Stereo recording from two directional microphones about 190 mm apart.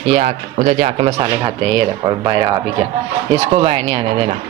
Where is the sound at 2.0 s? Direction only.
20° right (ahead or behind).